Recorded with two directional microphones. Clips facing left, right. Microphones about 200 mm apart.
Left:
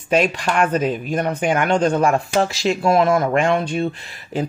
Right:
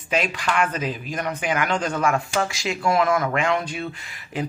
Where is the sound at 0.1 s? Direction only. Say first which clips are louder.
Left 6 dB; 45° left (ahead or behind).